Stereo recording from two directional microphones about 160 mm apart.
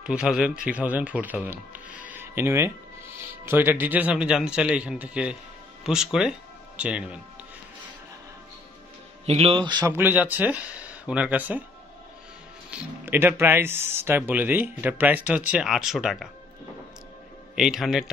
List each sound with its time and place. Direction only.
0.0 s speech: 5° right (ahead or behind)
9.2 s a man's voice: 40° right (ahead or behind)
9.8 s speech: 15° right (ahead or behind)
13.0 s speech: 15° right (ahead or behind)
17.6 s speech: centre (ahead or behind)